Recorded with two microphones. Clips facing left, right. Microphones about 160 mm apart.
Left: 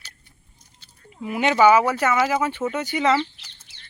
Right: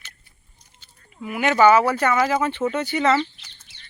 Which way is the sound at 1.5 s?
10° left (ahead or behind).